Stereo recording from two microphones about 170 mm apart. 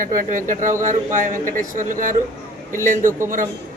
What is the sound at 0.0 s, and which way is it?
A man's voice, 50° right (ahead or behind).